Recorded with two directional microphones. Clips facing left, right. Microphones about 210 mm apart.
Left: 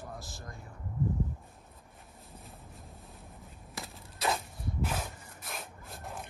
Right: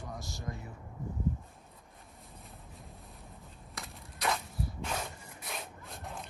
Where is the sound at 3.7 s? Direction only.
Centre (ahead or behind).